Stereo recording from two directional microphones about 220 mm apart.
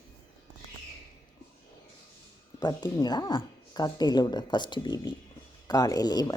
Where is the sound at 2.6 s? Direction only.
20° left (ahead or behind).